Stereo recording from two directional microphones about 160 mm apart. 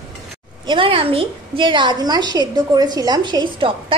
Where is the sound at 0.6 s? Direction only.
30° right (ahead or behind).